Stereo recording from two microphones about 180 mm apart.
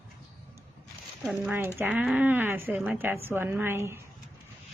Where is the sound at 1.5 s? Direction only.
10° right (ahead or behind).